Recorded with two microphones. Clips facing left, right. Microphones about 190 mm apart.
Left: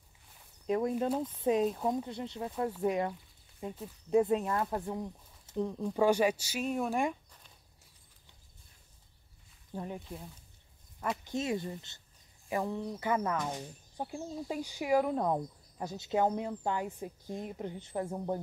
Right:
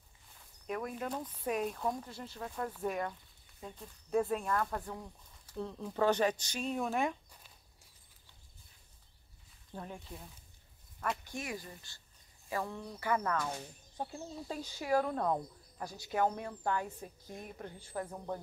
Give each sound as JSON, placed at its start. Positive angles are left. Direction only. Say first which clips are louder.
{"t": 0.7, "sound": "speech", "louder": "left 8 dB", "side_deg": 25}
{"t": 9.8, "sound": "speech", "louder": "left 5 dB", "side_deg": 10}